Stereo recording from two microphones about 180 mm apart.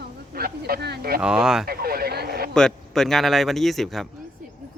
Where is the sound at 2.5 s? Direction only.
5° left (ahead or behind).